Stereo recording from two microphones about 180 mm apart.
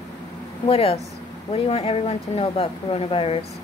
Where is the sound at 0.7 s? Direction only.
30° left (ahead or behind).